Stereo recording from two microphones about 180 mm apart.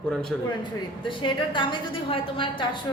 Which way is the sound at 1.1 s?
30° left (ahead or behind).